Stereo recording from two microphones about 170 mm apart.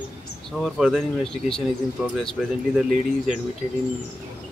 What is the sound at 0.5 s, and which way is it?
Speech, centre (ahead or behind).